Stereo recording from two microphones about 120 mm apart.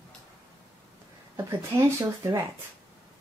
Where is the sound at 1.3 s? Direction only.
25° right (ahead or behind).